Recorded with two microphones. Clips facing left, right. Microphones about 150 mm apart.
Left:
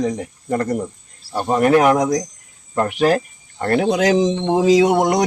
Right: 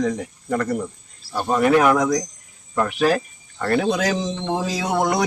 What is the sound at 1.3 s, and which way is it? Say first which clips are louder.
Speech: left 2 dB; 20° left (ahead or behind).